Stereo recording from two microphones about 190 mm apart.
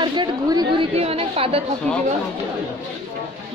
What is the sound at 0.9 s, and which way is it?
Speech, 30° right (ahead or behind).